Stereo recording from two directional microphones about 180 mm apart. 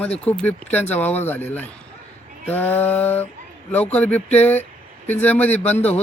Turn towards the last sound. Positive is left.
turn(degrees=10)  # may be behind; listen again after turning